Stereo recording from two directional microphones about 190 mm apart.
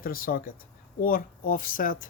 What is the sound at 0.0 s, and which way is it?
Speech, 50° left (ahead or behind).